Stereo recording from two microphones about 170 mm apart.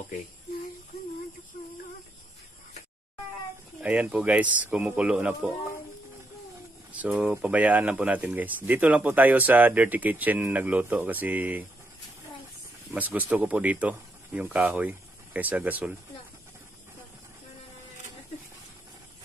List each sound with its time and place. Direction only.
3.8 s speech: 5° right (ahead or behind)
6.9 s speech: 10° right (ahead or behind)
12.9 s speech: 10° right (ahead or behind)